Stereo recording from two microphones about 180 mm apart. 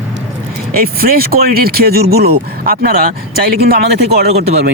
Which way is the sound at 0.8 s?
55° right (ahead or behind).